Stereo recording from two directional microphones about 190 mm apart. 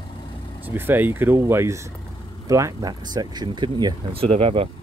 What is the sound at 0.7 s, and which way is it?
Speech, 10° right (ahead or behind).